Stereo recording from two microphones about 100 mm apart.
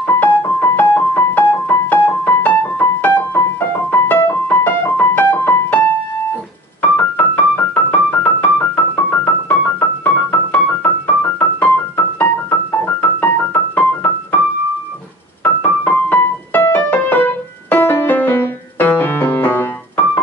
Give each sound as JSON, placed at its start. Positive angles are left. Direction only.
{"t": 0.0, "sound": "keyboard", "side_deg": 20}
{"t": 6.8, "sound": "keyboard", "side_deg": 15}
{"t": 12.2, "sound": "keyboard", "side_deg": 20}
{"t": 15.4, "sound": "keyboard", "side_deg": 15}